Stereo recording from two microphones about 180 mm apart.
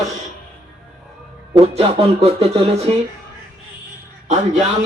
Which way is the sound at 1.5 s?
35° right (ahead or behind).